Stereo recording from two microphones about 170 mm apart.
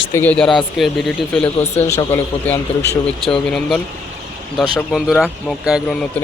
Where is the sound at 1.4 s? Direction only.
40° left (ahead or behind).